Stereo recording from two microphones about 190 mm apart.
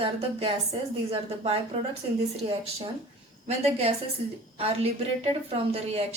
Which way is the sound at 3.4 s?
35° right (ahead or behind).